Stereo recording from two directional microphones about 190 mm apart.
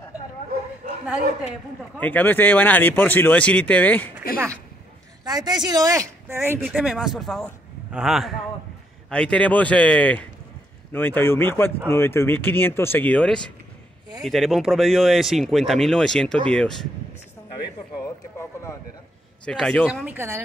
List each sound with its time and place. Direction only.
2.0 s speech: 10° left (ahead or behind)
5.2 s a woman's voice: 20° right (ahead or behind); by 16.7 s 5° left (ahead or behind)
18.4 s a sound: 15° left (ahead or behind)
19.4 s speech: 5° left (ahead or behind); by 20.4 s 15° right (ahead or behind)